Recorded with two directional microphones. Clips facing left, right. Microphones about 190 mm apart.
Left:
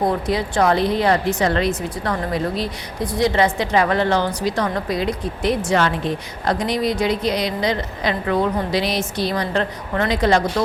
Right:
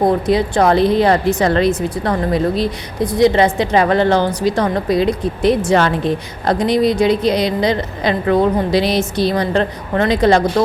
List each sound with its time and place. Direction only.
0.0 s a woman's voice: 25° right (ahead or behind)